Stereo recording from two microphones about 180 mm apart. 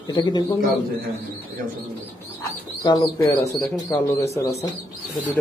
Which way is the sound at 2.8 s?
20° left (ahead or behind).